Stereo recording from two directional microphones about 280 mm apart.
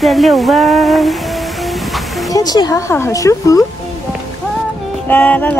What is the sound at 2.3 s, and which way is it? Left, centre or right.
Speech, centre.